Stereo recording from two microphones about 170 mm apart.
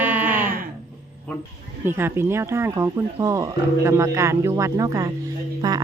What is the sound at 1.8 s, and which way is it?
A woman's voice, 15° right (ahead or behind).